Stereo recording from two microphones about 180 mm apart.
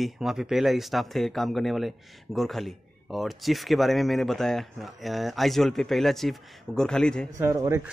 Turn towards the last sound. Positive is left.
turn(degrees=-15)  # may be behind; listen again after turning